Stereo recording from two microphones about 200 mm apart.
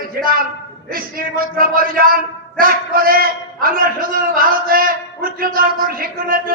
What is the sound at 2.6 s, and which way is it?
A man's voice, 45° right (ahead or behind).